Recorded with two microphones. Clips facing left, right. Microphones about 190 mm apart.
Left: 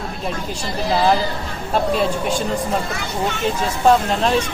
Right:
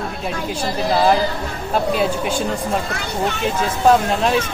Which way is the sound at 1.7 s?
Centre (ahead or behind).